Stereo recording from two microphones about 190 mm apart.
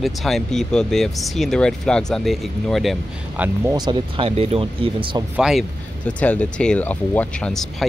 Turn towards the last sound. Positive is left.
turn(degrees=0)  # may be behind; listen again after turning